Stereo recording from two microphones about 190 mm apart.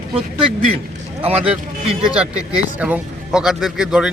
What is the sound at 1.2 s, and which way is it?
Speech, 30° right (ahead or behind).